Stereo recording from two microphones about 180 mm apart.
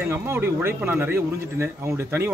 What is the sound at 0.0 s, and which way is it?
A man's voice, 10° right (ahead or behind).